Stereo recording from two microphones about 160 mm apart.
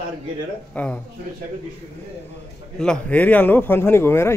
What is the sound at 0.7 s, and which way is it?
Speech, 10° left (ahead or behind).